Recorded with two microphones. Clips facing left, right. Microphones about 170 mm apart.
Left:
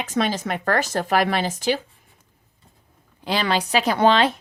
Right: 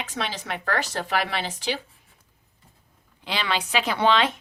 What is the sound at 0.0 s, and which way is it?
Speech, 45° left (ahead or behind).